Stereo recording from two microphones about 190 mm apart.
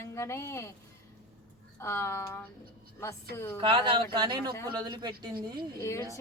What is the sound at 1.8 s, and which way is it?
Speech, 15° left (ahead or behind).